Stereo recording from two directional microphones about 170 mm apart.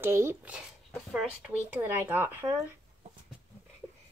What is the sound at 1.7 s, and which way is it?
Speech, 10° right (ahead or behind).